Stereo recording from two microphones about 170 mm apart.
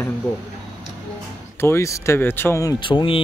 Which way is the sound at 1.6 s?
15° left (ahead or behind).